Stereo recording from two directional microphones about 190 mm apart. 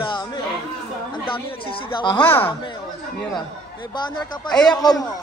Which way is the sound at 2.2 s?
10° left (ahead or behind).